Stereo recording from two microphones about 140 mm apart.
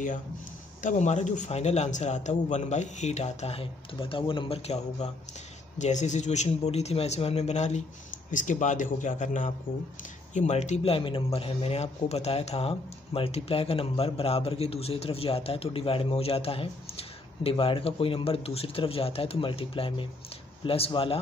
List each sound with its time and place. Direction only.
0.8 s speech: 55° left (ahead or behind)
5.8 s speech: 60° left (ahead or behind)
8.3 s a man's voice: 65° left (ahead or behind); by 21.2 s 40° left (ahead or behind)